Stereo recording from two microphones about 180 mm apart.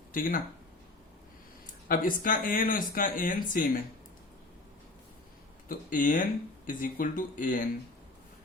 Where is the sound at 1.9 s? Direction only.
50° left (ahead or behind).